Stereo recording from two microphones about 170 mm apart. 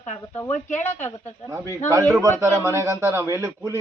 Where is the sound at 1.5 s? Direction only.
15° right (ahead or behind).